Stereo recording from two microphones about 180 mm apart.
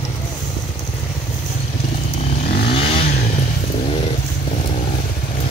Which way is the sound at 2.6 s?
30° left (ahead or behind).